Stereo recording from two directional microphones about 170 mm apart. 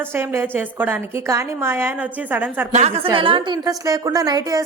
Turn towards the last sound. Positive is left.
turn(degrees=-20)  # may be behind; listen again after turning